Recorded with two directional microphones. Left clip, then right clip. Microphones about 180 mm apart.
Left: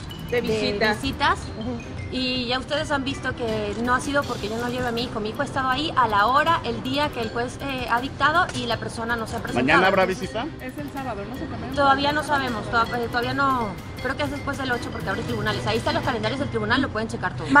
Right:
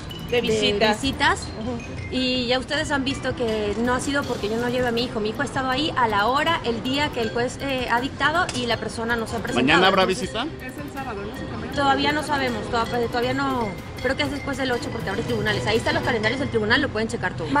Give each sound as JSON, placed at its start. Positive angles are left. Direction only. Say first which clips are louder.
{"t": 0.3, "sound": "a woman's voice", "louder": "right 3 dB", "side_deg": -10}
{"t": 9.5, "sound": "speech", "louder": "right 1 dB", "side_deg": -20}
{"t": 11.7, "sound": "speech", "louder": "left 1 dB", "side_deg": 0}